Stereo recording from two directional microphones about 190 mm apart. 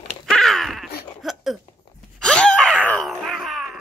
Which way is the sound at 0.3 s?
Centre (ahead or behind).